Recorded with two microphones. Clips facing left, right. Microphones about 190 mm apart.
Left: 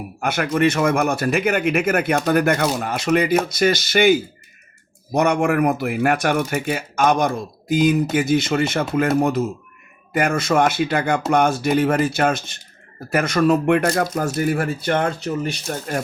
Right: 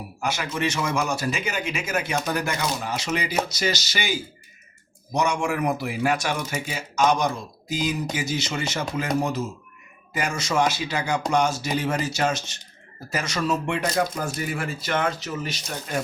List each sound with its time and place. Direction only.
0.2 s speech: 60° left (ahead or behind)
14.8 s speech: 35° left (ahead or behind)
15.6 s speech: 50° left (ahead or behind)